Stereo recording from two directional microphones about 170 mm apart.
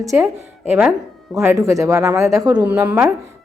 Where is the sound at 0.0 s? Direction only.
20° right (ahead or behind).